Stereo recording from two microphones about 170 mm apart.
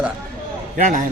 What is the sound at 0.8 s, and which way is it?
Speech, 50° right (ahead or behind).